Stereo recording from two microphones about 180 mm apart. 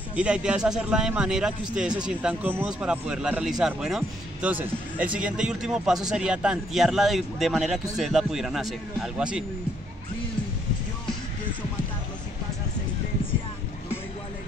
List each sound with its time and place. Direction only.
0.1 s speech: 5° right (ahead or behind)